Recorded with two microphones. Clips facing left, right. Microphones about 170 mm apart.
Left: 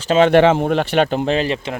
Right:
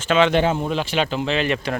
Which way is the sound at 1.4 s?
25° left (ahead or behind).